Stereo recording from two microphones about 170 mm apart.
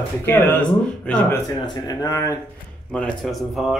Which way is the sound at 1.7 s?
20° left (ahead or behind).